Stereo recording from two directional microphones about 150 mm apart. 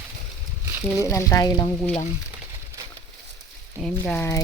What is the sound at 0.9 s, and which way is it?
Speech, 20° left (ahead or behind).